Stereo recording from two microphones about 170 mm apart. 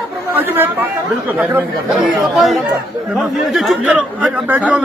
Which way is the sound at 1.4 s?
10° right (ahead or behind).